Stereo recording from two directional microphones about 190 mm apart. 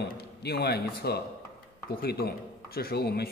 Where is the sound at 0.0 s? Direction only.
60° left (ahead or behind).